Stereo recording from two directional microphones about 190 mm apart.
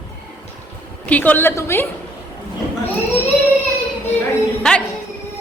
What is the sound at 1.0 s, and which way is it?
Speech, 10° left (ahead or behind).